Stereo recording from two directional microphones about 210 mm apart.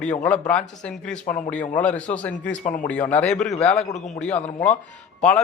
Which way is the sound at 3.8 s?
35° left (ahead or behind).